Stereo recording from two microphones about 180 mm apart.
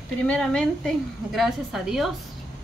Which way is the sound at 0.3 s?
5° left (ahead or behind).